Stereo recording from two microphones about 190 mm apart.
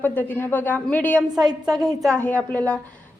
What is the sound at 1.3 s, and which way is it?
Speech, 20° right (ahead or behind).